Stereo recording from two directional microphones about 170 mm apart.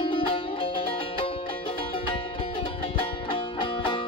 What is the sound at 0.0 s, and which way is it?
Music, 30° left (ahead or behind).